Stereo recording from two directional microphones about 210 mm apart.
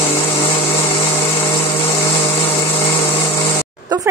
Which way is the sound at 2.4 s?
30° left (ahead or behind).